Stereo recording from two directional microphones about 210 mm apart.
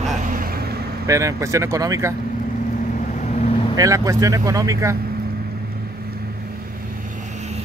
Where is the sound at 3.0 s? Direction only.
35° left (ahead or behind).